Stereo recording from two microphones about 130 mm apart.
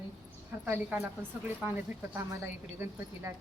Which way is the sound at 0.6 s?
15° right (ahead or behind).